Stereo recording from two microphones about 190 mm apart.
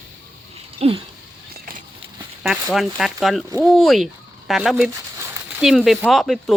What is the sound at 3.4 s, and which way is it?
Speech, 15° right (ahead or behind).